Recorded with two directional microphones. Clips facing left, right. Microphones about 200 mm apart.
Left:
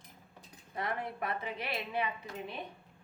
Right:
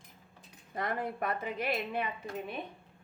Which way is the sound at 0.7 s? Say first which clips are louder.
Right 2 dB; 45° right (ahead or behind).